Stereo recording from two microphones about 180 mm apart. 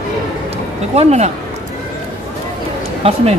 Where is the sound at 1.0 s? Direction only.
40° right (ahead or behind).